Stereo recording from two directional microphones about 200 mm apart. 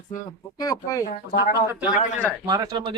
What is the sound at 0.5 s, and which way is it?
Speech, 15° left (ahead or behind).